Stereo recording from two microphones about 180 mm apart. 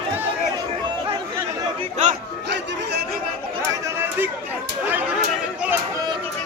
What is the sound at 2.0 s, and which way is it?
Chatter, 40° right (ahead or behind).